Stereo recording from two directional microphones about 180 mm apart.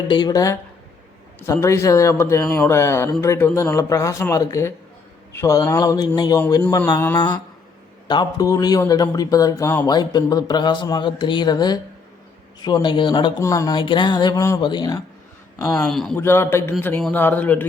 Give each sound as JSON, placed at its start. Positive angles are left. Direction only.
{"t": 0.1, "sound": "a man's voice", "side_deg": 25}
{"t": 15.8, "sound": "a man's voice", "side_deg": 5}
{"t": 16.2, "sound": "a man's voice", "side_deg": 15}